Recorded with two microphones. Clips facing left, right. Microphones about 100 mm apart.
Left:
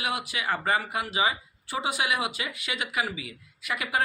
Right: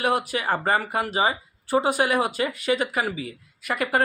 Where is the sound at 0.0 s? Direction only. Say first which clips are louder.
Right 7 dB; 45° right (ahead or behind).